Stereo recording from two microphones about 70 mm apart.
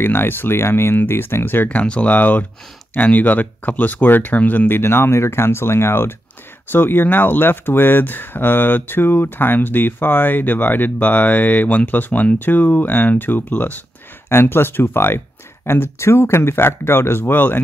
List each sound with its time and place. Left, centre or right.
0.0 s speech: left